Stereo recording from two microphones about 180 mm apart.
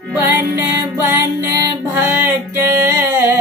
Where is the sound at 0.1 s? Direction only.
10° right (ahead or behind).